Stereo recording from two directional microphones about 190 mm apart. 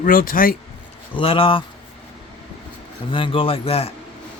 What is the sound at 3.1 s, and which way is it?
Speech, 25° left (ahead or behind).